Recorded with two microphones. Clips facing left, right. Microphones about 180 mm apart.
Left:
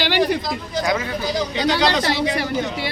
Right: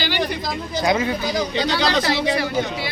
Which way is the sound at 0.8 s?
20° right (ahead or behind).